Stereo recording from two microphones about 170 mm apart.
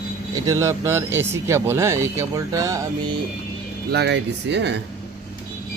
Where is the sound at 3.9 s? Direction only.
80° right.